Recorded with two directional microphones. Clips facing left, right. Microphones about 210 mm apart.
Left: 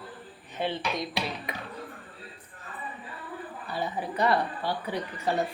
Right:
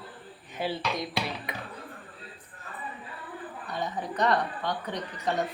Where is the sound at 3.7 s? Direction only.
5° left (ahead or behind).